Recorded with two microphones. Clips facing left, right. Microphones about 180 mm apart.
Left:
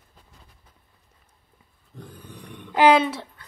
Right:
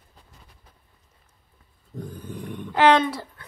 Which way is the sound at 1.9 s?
45° right (ahead or behind).